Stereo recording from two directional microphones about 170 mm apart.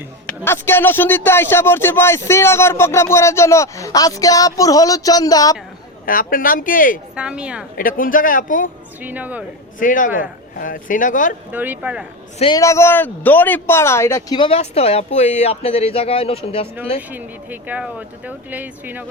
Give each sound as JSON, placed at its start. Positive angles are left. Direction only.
{"t": 0.3, "sound": "speech", "side_deg": 15}
{"t": 6.1, "sound": "speech", "side_deg": 55}
{"t": 7.2, "sound": "speech", "side_deg": -5}
{"t": 7.8, "sound": "speech", "side_deg": 55}
{"t": 9.0, "sound": "speech", "side_deg": -10}
{"t": 9.8, "sound": "speech", "side_deg": 50}
{"t": 11.5, "sound": "speech", "side_deg": -10}
{"t": 12.5, "sound": "speech", "side_deg": 15}
{"t": 17.1, "sound": "speech", "side_deg": -10}